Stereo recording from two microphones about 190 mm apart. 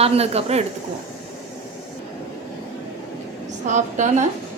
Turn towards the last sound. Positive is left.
turn(degrees=-40)  # may be behind; listen again after turning